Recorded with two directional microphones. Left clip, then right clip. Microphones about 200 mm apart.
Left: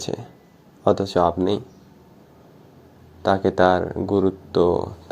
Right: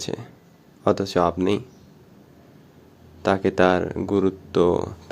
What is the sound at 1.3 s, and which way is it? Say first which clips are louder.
Speech: left 1 dB; 35° right (ahead or behind).